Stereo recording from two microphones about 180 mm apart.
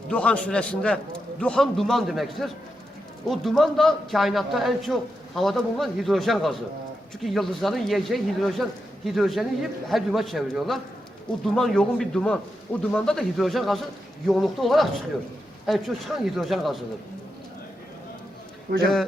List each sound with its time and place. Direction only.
0.1 s a man's voice: 5° left (ahead or behind)
18.7 s a man's voice: 60° right (ahead or behind)